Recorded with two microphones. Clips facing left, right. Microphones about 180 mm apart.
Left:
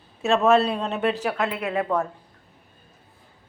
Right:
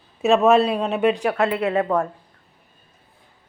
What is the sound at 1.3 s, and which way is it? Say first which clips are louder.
Speech: right 6 dB; 65° right (ahead or behind).